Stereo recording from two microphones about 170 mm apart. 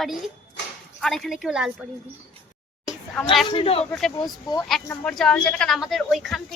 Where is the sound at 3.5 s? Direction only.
30° left (ahead or behind).